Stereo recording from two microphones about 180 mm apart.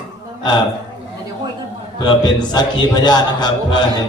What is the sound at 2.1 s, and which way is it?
A man's voice, 25° left (ahead or behind).